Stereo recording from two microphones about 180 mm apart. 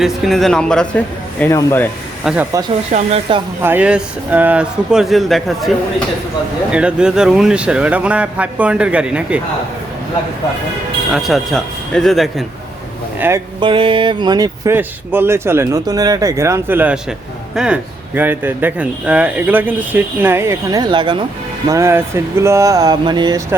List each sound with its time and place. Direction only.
0.0 s speech: centre (ahead or behind)
2.2 s speech: 5° right (ahead or behind)
2.9 s speech: 35° right (ahead or behind)
3.6 s speech: 10° right (ahead or behind)
11.1 s speech: centre (ahead or behind)
13.1 s speech: 10° right (ahead or behind)
13.6 s speech: 30° right (ahead or behind)
21.7 s speech: 15° right (ahead or behind)